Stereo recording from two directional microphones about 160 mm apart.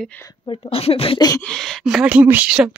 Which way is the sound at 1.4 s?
5° left (ahead or behind).